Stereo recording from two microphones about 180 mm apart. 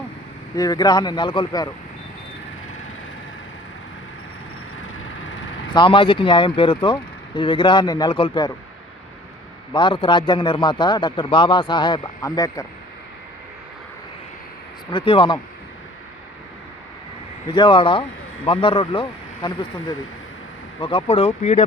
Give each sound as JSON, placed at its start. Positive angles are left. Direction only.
{"t": 0.5, "sound": "a man's voice", "side_deg": 20}
{"t": 5.7, "sound": "a man's voice", "side_deg": 30}
{"t": 9.7, "sound": "a man's voice", "side_deg": 25}
{"t": 14.8, "sound": "a man's voice", "side_deg": 30}
{"t": 17.5, "sound": "a man's voice", "side_deg": 25}